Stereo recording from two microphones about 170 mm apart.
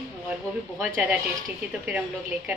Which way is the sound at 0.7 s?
10° right (ahead or behind).